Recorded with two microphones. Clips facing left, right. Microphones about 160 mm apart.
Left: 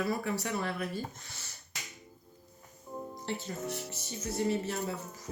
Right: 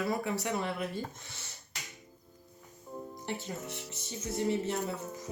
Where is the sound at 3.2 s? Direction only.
25° right (ahead or behind).